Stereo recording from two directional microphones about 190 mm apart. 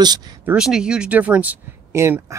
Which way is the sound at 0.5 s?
5° right (ahead or behind).